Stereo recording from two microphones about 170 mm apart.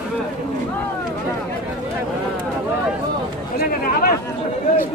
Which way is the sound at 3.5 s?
60° left (ahead or behind).